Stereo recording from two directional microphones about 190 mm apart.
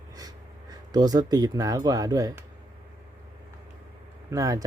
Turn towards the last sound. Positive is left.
turn(degrees=-15)  # may be behind; listen again after turning